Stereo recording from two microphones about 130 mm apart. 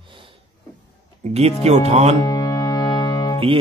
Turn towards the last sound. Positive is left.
turn(degrees=35)  # may be behind; listen again after turning